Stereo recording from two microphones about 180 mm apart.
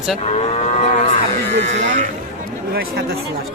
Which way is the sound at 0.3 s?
35° left (ahead or behind).